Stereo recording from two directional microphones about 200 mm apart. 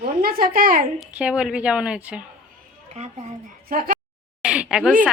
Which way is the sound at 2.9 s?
35° right (ahead or behind).